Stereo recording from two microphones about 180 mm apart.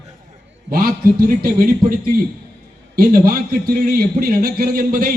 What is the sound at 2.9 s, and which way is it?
A man's voice, 55° right (ahead or behind).